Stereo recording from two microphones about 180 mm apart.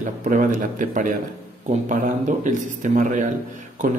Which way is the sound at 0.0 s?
45° right (ahead or behind).